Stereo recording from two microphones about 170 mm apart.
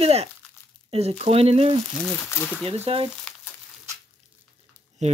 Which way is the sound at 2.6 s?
35° right (ahead or behind).